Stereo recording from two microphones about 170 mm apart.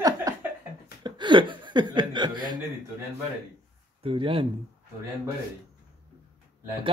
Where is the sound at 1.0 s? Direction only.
25° right (ahead or behind).